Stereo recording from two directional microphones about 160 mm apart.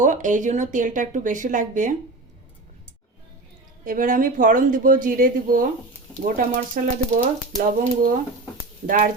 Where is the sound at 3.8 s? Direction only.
60° right (ahead or behind).